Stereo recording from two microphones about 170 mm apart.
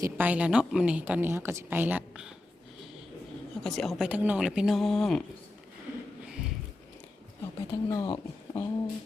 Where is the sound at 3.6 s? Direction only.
Centre (ahead or behind).